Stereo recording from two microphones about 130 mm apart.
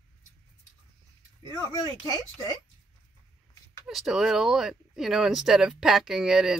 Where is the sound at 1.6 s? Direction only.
30° left (ahead or behind).